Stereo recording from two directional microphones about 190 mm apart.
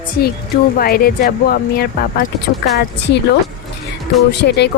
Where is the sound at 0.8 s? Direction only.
50° left (ahead or behind).